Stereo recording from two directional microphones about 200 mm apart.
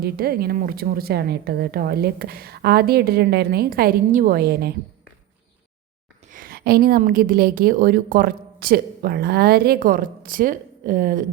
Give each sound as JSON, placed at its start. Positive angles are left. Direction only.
{"t": 0.0, "sound": "a woman's voice", "side_deg": -50}
{"t": 6.3, "sound": "a woman's voice", "side_deg": -45}